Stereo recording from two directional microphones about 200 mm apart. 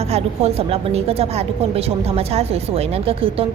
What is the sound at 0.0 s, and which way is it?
A woman's voice, 30° right (ahead or behind).